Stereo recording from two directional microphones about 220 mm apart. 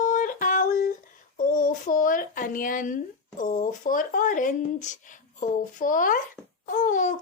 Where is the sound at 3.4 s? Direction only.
35° left (ahead or behind).